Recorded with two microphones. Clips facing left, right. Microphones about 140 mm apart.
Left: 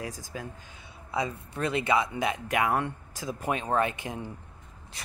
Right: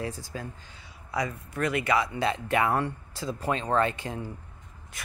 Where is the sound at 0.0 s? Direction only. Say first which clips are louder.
Right 2 dB; 15° left (ahead or behind).